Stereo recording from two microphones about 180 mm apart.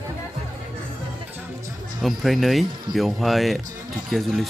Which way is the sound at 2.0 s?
Centre (ahead or behind).